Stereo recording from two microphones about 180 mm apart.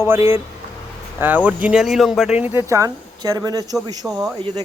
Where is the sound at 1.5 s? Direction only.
5° right (ahead or behind).